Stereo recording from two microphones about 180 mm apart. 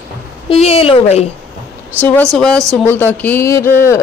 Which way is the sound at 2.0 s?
10° left (ahead or behind).